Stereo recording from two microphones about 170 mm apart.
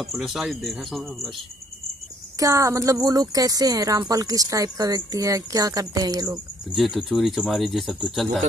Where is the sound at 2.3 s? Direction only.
20° right (ahead or behind).